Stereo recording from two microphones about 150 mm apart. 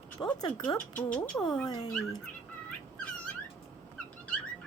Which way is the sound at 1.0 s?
10° left (ahead or behind).